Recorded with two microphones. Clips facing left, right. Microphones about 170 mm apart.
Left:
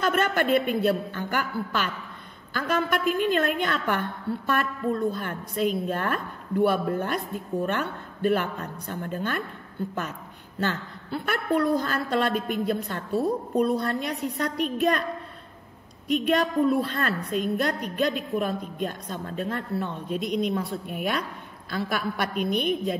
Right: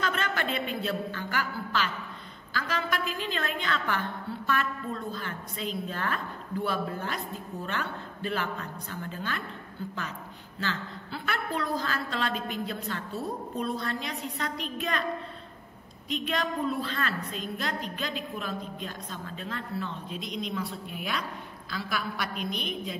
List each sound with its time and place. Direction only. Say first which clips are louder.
0.0 s a woman's voice: left 7 dB; 50° left (ahead or behind)
5.1 s a woman's voice: left 6 dB; 50° left (ahead or behind)
10.6 s a woman's voice: left 5 dB; 50° left (ahead or behind)
16.1 s a woman's voice: left 7 dB; 50° left (ahead or behind)